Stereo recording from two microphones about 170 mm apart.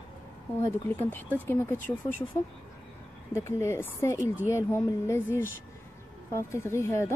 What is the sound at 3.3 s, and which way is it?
Speech, 15° left (ahead or behind).